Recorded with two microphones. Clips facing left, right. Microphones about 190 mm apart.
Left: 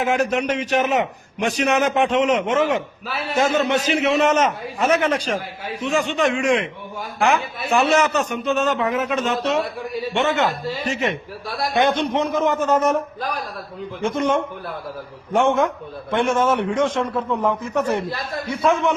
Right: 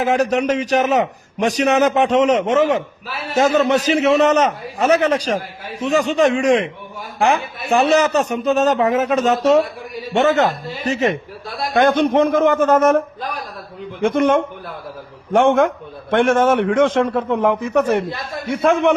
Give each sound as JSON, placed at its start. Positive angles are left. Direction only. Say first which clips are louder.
{"t": 0.0, "sound": "a man's voice", "louder": "right 3 dB", "side_deg": -40}
{"t": 14.0, "sound": "a man's voice", "louder": "right 5 dB", "side_deg": -55}
{"t": 16.6, "sound": "a man's voice", "louder": "right 5 dB", "side_deg": -75}
{"t": 17.0, "sound": "a man's voice", "louder": "right 5 dB", "side_deg": -60}